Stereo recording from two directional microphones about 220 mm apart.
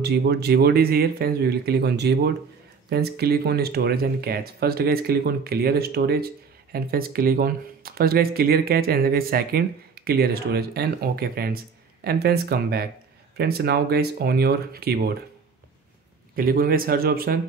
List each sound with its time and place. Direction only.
0.0 s speech: 50° right (ahead or behind)
16.3 s speech: 40° right (ahead or behind)